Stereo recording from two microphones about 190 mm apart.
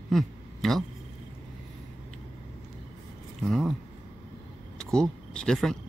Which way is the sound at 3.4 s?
Centre (ahead or behind).